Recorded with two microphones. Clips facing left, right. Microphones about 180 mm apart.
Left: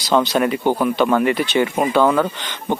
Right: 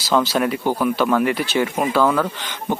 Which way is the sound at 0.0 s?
5° right (ahead or behind).